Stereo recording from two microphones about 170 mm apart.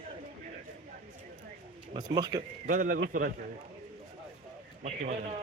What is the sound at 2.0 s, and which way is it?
Speech, 25° right (ahead or behind).